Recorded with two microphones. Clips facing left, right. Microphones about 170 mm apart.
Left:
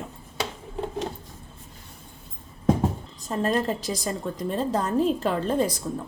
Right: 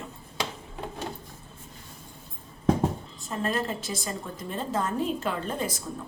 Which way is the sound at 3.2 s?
40° left (ahead or behind).